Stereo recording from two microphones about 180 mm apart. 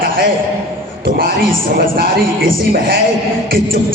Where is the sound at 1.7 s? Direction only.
55° right (ahead or behind).